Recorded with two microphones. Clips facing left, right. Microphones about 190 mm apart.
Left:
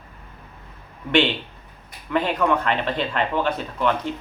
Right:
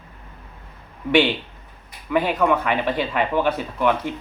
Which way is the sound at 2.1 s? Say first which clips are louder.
Right 2 dB; 10° right (ahead or behind).